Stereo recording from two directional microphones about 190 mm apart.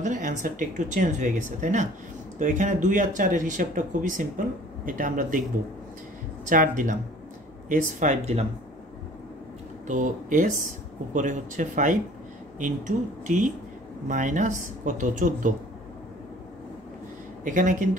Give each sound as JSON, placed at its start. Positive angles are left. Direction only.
{"t": 0.0, "sound": "speech", "side_deg": -40}
{"t": 6.5, "sound": "speech", "side_deg": -45}
{"t": 9.8, "sound": "speech", "side_deg": -40}
{"t": 17.5, "sound": "speech", "side_deg": -40}